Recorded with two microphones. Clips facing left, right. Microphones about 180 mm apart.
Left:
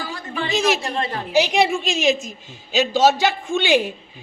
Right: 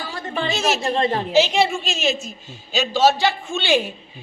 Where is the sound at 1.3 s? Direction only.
15° left (ahead or behind).